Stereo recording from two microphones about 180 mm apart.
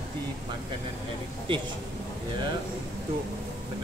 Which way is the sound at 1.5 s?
30° right (ahead or behind).